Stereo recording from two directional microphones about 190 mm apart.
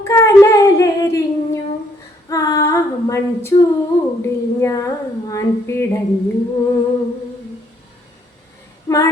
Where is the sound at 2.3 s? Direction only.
20° left (ahead or behind).